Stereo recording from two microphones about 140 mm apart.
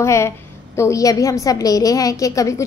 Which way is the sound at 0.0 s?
20° left (ahead or behind).